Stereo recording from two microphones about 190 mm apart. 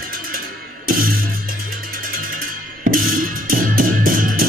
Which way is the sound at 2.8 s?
50° right (ahead or behind).